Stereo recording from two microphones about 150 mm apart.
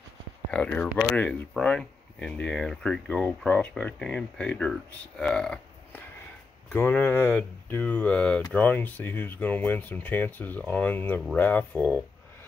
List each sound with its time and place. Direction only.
0.5 s speech: 10° left (ahead or behind)